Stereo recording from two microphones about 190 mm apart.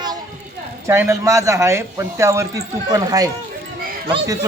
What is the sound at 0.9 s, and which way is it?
Speech, 15° right (ahead or behind).